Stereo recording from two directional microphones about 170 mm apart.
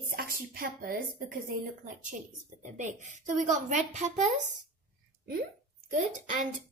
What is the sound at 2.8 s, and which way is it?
A woman's voice, 45° right (ahead or behind).